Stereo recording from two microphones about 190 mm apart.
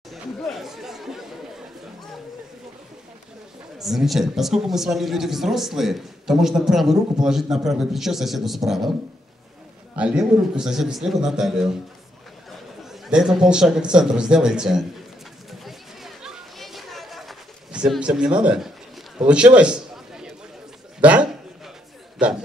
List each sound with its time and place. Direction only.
0.1 s chatter: centre (ahead or behind)
3.7 s a woman's voice: centre (ahead or behind)
9.9 s a woman's voice: 5° right (ahead or behind)
13.0 s a woman's voice: centre (ahead or behind)
15.6 s chatter: centre (ahead or behind)
19.1 s a sound: 5° right (ahead or behind)
21.0 s a man's voice: 5° right (ahead or behind)